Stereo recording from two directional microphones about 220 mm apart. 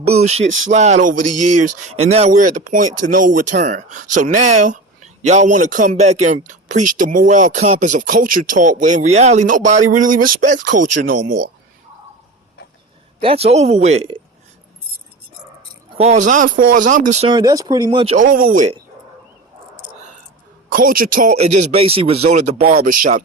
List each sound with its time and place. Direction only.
0.0 s music: 30° right (ahead or behind)
0.4 s speech: 60° right (ahead or behind)
0.7 s speech: 30° right (ahead or behind)
1.2 s speech: 90° right
1.9 s speech: 30° right (ahead or behind)
10.8 s speech: 90° right
13.2 s speech: 25° right (ahead or behind)
16.0 s speech: 30° right (ahead or behind)
18.0 s speech: 30° right (ahead or behind)
20.7 s speech: 40° right (ahead or behind)